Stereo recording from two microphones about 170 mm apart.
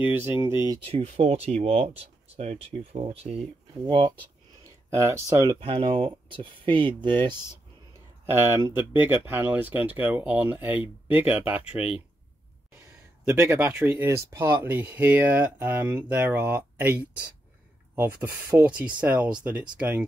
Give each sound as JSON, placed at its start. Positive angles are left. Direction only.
{"t": 0.0, "sound": "speech", "side_deg": -10}
{"t": 0.8, "sound": "speech", "side_deg": -35}
{"t": 4.9, "sound": "speech", "side_deg": -15}
{"t": 5.6, "sound": "speech", "side_deg": -30}
{"t": 8.3, "sound": "speech", "side_deg": -15}
{"t": 13.2, "sound": "speech", "side_deg": -15}